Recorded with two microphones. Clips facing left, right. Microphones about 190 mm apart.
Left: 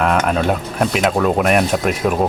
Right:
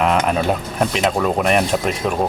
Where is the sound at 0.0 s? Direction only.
Centre (ahead or behind).